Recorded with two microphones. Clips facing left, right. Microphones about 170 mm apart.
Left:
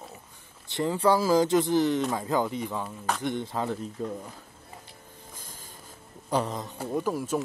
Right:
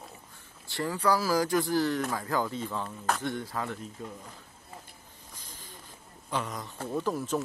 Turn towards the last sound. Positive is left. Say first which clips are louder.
# left 2 dB
turn(degrees=10)  # may be behind; listen again after turning